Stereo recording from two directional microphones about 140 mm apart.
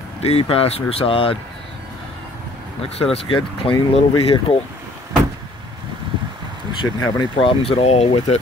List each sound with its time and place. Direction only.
0.2 s speech: 45° left (ahead or behind)
2.8 s speech: 45° left (ahead or behind)
6.8 s speech: 35° left (ahead or behind)